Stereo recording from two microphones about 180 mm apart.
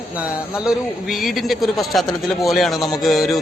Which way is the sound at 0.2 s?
5° right (ahead or behind).